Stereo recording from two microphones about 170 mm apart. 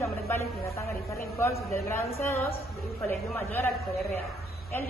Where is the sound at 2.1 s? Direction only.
15° left (ahead or behind).